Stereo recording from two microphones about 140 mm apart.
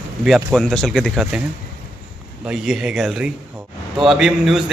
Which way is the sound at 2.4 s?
5° right (ahead or behind).